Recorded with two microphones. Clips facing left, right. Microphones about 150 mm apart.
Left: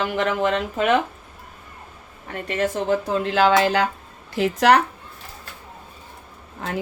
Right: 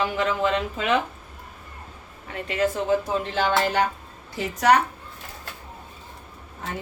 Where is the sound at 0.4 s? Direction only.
55° left (ahead or behind).